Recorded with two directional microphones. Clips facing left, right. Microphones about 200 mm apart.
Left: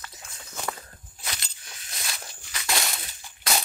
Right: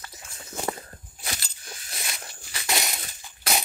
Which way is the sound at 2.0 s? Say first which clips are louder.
Even; 25° right (ahead or behind).